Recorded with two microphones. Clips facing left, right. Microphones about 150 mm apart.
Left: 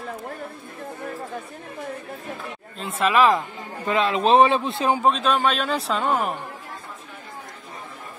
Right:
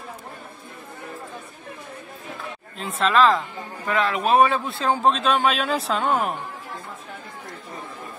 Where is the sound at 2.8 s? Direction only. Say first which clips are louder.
Even; 10° left (ahead or behind).